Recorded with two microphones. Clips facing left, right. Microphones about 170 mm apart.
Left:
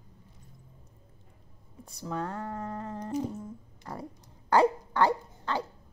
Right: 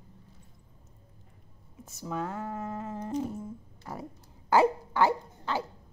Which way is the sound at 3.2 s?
10° right (ahead or behind).